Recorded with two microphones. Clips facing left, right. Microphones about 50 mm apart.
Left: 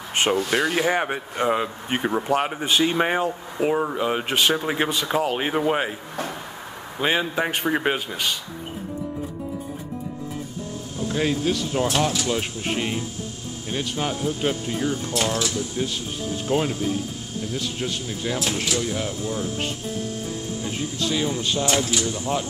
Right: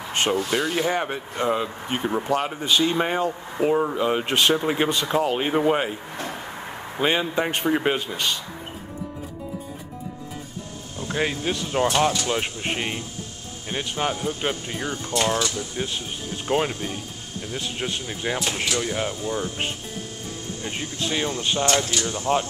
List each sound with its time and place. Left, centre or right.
0.1 s a sound: centre
0.5 s speech: left; by 5.9 s centre
7.0 s speech: centre
11.1 s speech: centre
17.6 s speech: right
19.0 s speech: centre
21.0 s speech: right
21.6 s speech: centre
22.3 s speech: centre